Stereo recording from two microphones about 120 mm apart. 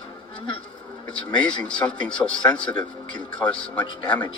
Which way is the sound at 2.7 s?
40° left (ahead or behind).